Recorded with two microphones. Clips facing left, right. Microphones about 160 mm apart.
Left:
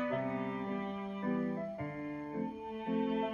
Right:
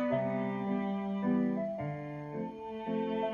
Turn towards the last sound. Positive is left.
turn(degrees=-35)  # may be behind; listen again after turning